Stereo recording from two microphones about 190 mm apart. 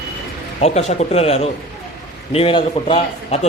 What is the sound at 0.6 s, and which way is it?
A man's voice, 35° left (ahead or behind).